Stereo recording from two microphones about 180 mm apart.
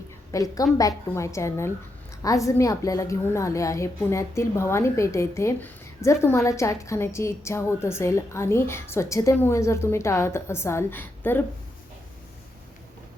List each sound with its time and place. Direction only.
0.3 s a woman's voice: 20° left (ahead or behind)